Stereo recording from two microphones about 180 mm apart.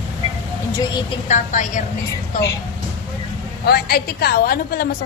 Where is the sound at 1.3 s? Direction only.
45° left (ahead or behind).